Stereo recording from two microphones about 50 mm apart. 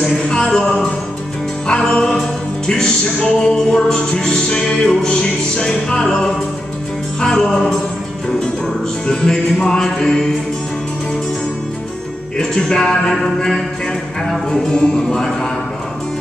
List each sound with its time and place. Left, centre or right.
0.3 s music: centre
7.2 s music: centre
9.0 s music: centre
12.4 s music: centre